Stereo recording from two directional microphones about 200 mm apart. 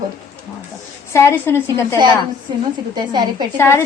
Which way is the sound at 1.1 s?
15° left (ahead or behind).